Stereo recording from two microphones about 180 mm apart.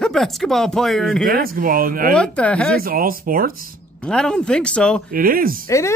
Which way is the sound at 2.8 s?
55° right (ahead or behind).